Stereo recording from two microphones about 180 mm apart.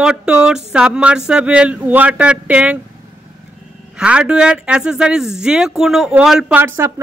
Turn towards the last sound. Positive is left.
turn(degrees=-15)  # may be behind; listen again after turning